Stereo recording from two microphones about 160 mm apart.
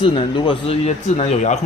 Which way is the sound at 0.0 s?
30° left (ahead or behind).